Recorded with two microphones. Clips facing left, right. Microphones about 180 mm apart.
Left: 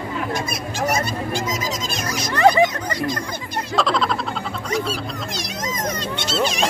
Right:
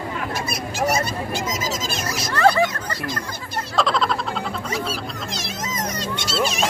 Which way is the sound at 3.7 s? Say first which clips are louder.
Left 1 dB; centre (ahead or behind).